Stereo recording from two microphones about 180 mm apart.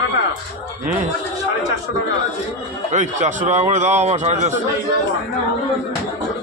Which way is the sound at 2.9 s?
45° right (ahead or behind).